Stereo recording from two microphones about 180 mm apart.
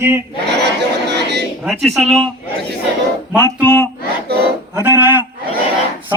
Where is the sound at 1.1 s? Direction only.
70° right (ahead or behind).